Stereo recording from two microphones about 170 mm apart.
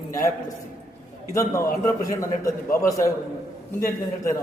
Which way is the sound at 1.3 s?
20° left (ahead or behind).